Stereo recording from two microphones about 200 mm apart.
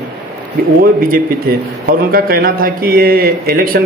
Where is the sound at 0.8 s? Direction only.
45° right (ahead or behind).